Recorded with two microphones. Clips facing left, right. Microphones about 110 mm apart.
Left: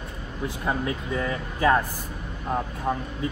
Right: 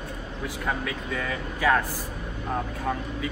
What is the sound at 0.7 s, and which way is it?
A man's voice, 30° left (ahead or behind).